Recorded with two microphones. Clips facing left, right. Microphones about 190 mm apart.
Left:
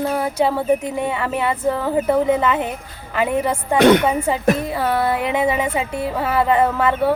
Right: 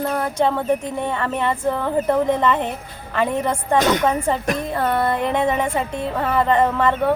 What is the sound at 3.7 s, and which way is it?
Speech, 65° left (ahead or behind).